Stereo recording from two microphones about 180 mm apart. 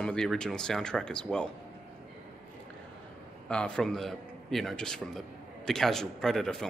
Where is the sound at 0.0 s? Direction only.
5° left (ahead or behind).